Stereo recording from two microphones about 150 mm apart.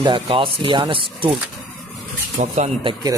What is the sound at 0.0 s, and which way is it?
Speech, 35° right (ahead or behind).